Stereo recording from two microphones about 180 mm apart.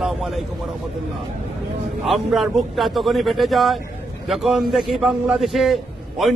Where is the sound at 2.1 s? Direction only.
Centre (ahead or behind).